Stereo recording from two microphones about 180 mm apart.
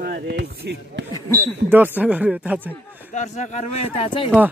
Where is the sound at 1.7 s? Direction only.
10° right (ahead or behind).